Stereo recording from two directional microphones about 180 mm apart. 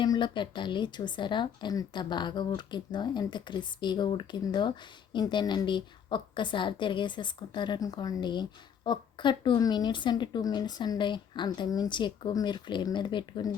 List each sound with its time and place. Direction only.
0.0 s a woman's voice: 25° left (ahead or behind)